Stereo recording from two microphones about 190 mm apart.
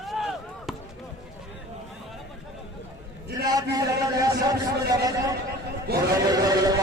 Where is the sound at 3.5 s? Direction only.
20° right (ahead or behind).